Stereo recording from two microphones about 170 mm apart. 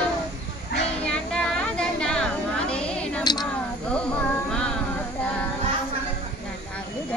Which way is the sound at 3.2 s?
25° left (ahead or behind).